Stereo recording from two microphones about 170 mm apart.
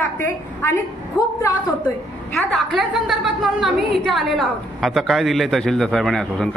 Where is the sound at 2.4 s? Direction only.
5° left (ahead or behind).